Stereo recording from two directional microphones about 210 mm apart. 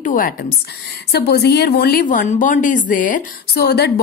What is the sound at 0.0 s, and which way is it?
A woman's voice, 40° left (ahead or behind).